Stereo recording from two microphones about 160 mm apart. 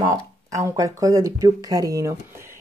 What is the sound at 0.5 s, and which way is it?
A woman's voice, 20° right (ahead or behind).